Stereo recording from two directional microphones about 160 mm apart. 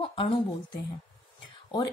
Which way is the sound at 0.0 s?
35° left (ahead or behind).